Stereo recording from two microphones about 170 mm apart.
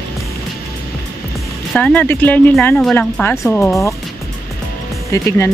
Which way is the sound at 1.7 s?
10° left (ahead or behind).